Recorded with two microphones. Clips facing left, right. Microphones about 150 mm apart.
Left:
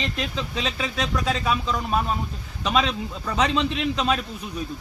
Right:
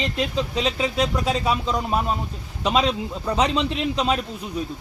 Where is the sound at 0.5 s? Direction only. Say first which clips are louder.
Right 5 dB; 30° right (ahead or behind).